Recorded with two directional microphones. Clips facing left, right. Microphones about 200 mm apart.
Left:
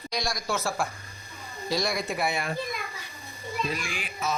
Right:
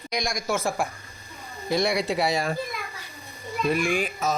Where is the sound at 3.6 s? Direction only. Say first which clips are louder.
Right 13 dB; 60° right (ahead or behind).